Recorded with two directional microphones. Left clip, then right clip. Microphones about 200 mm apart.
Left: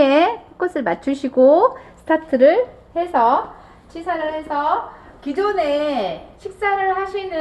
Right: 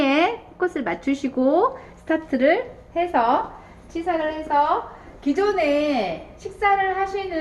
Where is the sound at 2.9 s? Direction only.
25° left (ahead or behind).